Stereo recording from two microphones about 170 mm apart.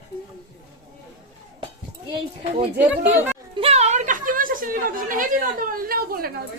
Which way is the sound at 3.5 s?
35° right (ahead or behind).